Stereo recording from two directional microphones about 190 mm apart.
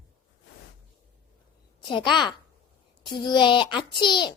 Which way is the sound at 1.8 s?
25° left (ahead or behind).